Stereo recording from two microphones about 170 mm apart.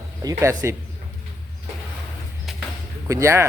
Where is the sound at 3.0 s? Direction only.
15° right (ahead or behind).